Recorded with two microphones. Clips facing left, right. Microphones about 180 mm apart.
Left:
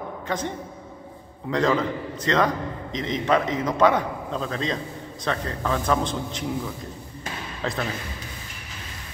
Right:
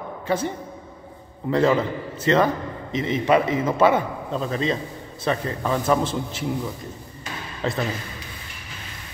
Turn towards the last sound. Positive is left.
turn(degrees=0)  # may be behind; listen again after turning